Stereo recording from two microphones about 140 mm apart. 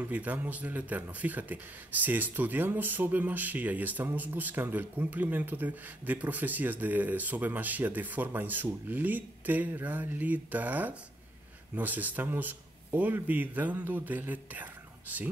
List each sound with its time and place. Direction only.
0.0 s speech: 10° right (ahead or behind)